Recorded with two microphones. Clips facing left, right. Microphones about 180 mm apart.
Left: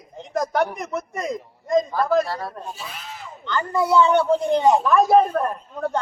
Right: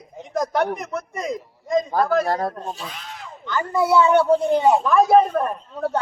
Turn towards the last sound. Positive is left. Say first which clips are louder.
# right 1 dB
turn(degrees=-5)  # may be behind; listen again after turning